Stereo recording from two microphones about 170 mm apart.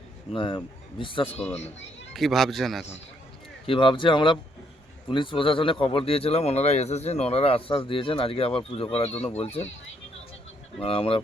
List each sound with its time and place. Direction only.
0.3 s a man's voice: 30° left (ahead or behind)
1.3 s speech: 10° left (ahead or behind)
3.7 s a man's voice: 30° left (ahead or behind)
10.8 s speech: 35° left (ahead or behind)